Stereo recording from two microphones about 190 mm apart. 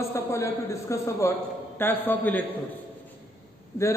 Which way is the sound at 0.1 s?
15° left (ahead or behind).